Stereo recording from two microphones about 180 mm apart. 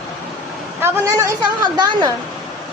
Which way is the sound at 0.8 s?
20° right (ahead or behind).